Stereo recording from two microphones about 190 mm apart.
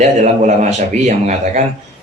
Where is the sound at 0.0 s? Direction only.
40° right (ahead or behind).